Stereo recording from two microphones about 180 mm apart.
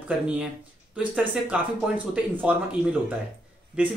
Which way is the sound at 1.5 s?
5° right (ahead or behind).